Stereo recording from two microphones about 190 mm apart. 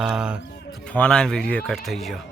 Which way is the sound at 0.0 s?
5° right (ahead or behind).